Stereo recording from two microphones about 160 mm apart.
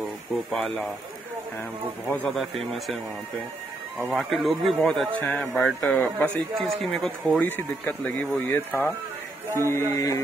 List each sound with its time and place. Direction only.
0.5 s a man's voice: 5° left (ahead or behind)
2.0 s a man's voice: 10° left (ahead or behind)
4.1 s a man's voice: centre (ahead or behind); by 10.2 s 20° left (ahead or behind)